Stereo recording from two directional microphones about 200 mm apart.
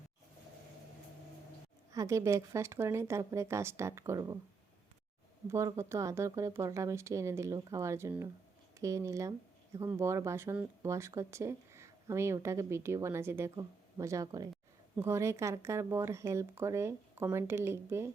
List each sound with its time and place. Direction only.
1.9 s speech: 15° right (ahead or behind)
5.5 s speech: 15° right (ahead or behind)